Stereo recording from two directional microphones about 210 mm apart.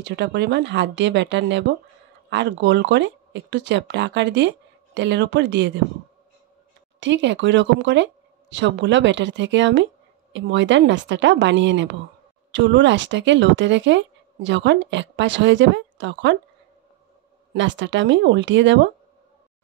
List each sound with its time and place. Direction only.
0.0 s speech: 55° right (ahead or behind)
7.0 s speech: 60° right (ahead or behind)
17.6 s speech: 60° right (ahead or behind)